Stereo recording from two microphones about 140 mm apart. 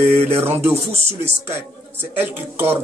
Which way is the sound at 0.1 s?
50° right (ahead or behind).